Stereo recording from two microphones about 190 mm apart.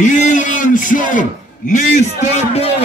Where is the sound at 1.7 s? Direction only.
40° left (ahead or behind).